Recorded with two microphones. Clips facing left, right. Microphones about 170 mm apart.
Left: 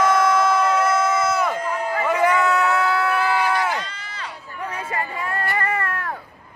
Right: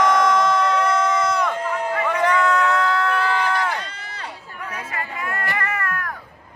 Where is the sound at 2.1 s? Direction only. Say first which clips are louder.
Left 1 dB; 10° left (ahead or behind).